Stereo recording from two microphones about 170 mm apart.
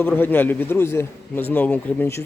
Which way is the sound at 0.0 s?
10° left (ahead or behind).